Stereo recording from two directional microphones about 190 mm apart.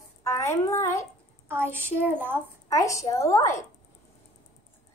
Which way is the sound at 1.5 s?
10° right (ahead or behind).